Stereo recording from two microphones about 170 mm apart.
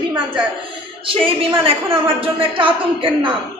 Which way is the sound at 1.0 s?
30° right (ahead or behind).